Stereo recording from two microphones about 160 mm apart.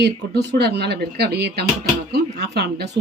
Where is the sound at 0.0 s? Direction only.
90° right.